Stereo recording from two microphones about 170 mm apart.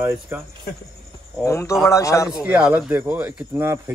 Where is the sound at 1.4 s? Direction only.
15° left (ahead or behind).